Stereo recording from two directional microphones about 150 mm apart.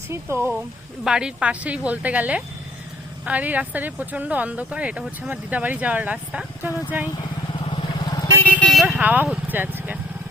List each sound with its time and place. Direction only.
0.1 s speech: 15° right (ahead or behind)
1.0 s speech: 5° right (ahead or behind)
7.6 s vehicle: 35° left (ahead or behind); by 10.0 s 10° right (ahead or behind)